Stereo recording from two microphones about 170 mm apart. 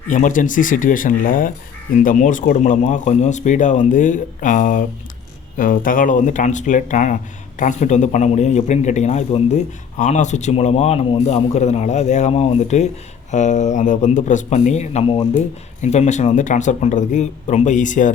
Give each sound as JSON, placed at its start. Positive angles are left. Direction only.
{"t": 0.1, "sound": "a man's voice", "side_deg": 50}